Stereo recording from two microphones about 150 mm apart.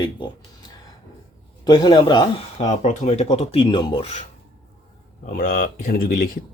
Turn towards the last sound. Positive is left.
turn(degrees=75)  # may be behind; listen again after turning